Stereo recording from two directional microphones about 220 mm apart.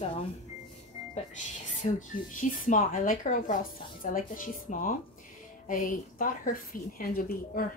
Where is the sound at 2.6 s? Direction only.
35° left (ahead or behind).